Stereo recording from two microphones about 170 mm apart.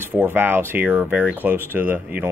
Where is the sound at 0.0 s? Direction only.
10° right (ahead or behind).